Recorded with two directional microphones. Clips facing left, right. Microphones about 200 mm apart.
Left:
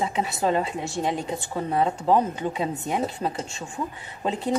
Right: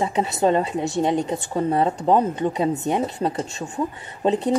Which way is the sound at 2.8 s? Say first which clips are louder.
Right 4 dB; 25° right (ahead or behind).